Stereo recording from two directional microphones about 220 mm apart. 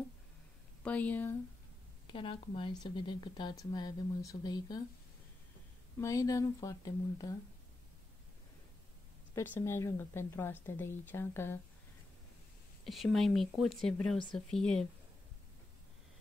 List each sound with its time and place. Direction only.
0.8 s speech: 5° left (ahead or behind)
2.1 s speech: 20° left (ahead or behind)
5.9 s speech: 15° left (ahead or behind)
9.3 s speech: 10° left (ahead or behind)
12.8 s speech: centre (ahead or behind)